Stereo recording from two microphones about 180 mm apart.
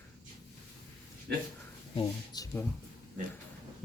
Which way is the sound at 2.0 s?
20° left (ahead or behind).